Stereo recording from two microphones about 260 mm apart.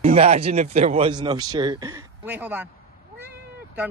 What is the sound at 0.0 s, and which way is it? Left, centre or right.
Speech, right.